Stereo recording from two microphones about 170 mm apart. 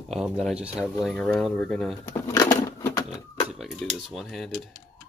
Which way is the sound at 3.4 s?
5° right (ahead or behind).